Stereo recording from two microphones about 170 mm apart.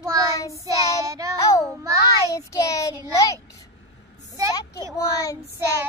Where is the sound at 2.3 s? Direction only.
20° left (ahead or behind).